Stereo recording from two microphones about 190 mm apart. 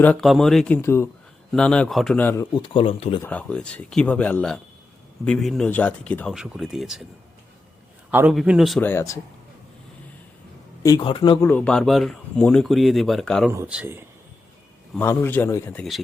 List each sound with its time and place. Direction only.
0.0 s speech: 5° left (ahead or behind); by 3.2 s 30° left (ahead or behind)
3.2 s speech: 5° left (ahead or behind)
8.1 s speech: 5° right (ahead or behind)
8.8 s speech: 15° left (ahead or behind)
10.8 s a man's voice: 25° left (ahead or behind)
11.4 s speech: 5° left (ahead or behind)
13.5 s speech: 10° right (ahead or behind)
14.9 s speech: 10° left (ahead or behind)